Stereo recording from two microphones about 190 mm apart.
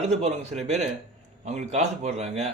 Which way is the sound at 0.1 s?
35° right (ahead or behind).